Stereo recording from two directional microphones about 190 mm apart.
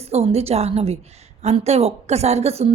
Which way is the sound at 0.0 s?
30° right (ahead or behind).